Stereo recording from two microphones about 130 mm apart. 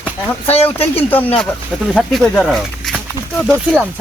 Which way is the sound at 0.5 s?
50° left (ahead or behind).